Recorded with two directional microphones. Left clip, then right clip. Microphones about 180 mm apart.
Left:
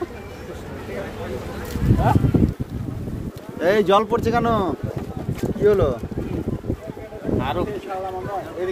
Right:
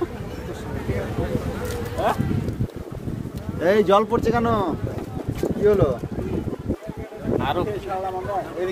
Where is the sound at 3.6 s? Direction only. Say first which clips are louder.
Even; 20° left (ahead or behind).